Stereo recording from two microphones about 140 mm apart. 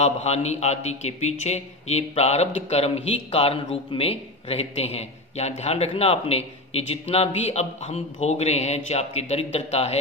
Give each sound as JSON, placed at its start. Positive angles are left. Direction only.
{"t": 0.0, "sound": "a man's voice", "side_deg": 50}